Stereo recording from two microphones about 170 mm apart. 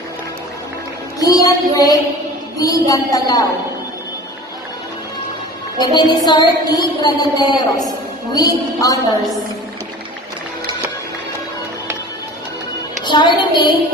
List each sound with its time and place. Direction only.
1.2 s child singing: 20° left (ahead or behind)
2.6 s music: 20° left (ahead or behind)
5.8 s music: 25° left (ahead or behind)
13.0 s a sound: 25° left (ahead or behind)
13.5 s music: 25° left (ahead or behind)